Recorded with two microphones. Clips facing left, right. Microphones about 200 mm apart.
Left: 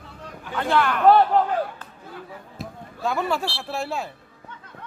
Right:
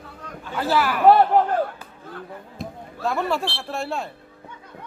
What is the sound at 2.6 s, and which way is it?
Speech, centre (ahead or behind).